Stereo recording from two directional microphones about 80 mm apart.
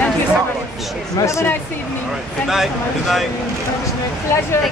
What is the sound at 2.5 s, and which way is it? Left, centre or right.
Speech, centre.